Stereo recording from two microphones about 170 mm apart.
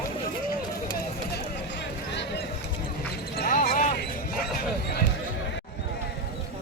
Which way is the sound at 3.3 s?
60° left (ahead or behind).